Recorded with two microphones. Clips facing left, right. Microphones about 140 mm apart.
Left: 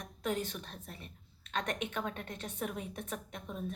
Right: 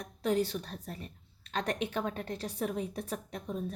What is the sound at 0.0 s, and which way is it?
A woman's voice, 35° right (ahead or behind).